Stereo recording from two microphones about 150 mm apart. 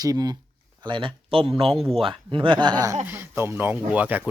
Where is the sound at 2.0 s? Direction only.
35° right (ahead or behind).